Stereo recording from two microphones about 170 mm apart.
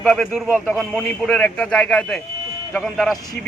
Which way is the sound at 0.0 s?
Centre (ahead or behind).